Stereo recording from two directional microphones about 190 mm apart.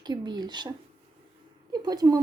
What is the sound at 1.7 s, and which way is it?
Speech, 20° right (ahead or behind).